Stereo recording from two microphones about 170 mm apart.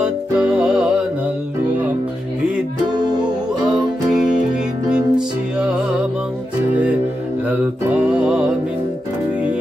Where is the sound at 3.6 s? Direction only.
Centre (ahead or behind).